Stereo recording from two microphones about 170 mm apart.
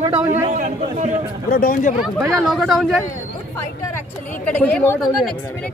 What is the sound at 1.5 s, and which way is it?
Speech, 55° left (ahead or behind).